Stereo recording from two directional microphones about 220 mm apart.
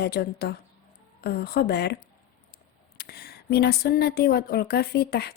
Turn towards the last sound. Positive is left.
turn(degrees=45)  # may be behind; listen again after turning